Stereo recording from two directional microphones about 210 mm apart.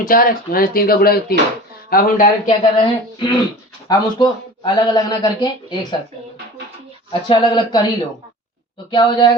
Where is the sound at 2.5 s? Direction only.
25° left (ahead or behind).